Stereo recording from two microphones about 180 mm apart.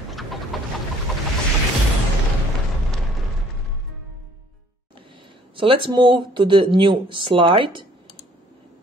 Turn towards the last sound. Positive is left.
turn(degrees=-30)  # may be behind; listen again after turning